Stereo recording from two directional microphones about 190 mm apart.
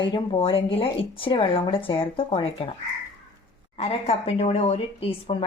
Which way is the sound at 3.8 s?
35° left (ahead or behind).